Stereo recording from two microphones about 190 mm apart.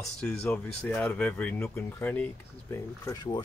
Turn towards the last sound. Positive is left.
turn(degrees=20)  # may be behind; listen again after turning